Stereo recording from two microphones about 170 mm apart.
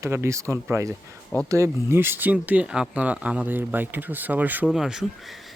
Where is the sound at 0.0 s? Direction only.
15° right (ahead or behind).